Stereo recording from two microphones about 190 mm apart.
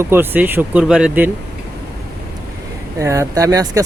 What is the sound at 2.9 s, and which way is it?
Speech, 15° right (ahead or behind).